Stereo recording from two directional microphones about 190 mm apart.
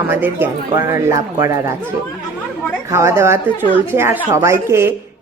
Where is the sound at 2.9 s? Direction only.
15° right (ahead or behind).